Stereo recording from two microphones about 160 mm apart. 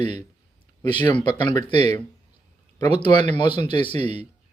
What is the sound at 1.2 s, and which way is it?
Speech, 45° right (ahead or behind).